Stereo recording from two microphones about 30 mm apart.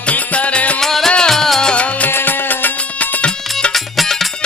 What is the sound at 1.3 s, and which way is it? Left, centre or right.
Music, centre.